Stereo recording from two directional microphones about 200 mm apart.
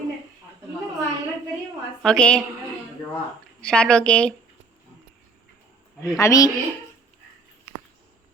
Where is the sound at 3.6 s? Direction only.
5° left (ahead or behind).